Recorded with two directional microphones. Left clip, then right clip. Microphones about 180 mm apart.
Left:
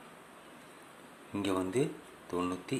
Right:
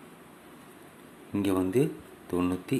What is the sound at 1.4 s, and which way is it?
Speech, 5° right (ahead or behind).